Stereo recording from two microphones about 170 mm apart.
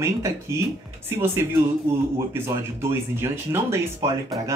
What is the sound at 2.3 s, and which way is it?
Speech, 15° right (ahead or behind).